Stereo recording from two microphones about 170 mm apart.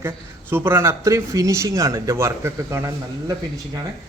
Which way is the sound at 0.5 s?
15° right (ahead or behind).